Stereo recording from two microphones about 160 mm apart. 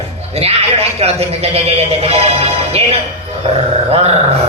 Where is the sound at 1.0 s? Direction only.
40° right (ahead or behind).